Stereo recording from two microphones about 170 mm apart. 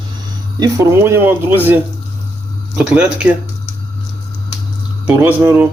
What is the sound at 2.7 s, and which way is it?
Speech, 5° right (ahead or behind).